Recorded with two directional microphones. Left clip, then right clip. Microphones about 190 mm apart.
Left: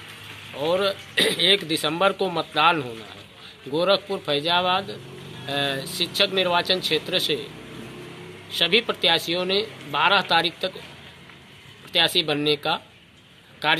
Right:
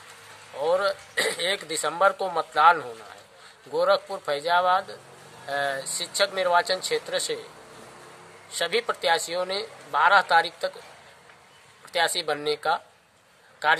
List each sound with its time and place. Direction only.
0.6 s a sound: 15° right (ahead or behind)
1.8 s a man's voice: 15° right (ahead or behind)
6.6 s speech: 5° left (ahead or behind)
7.1 s speech: 20° right (ahead or behind)
8.5 s speech: 20° right (ahead or behind)
11.9 s speech: 20° right (ahead or behind)